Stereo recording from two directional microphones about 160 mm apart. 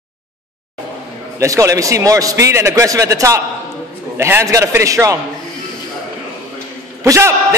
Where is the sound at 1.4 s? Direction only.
20° right (ahead or behind).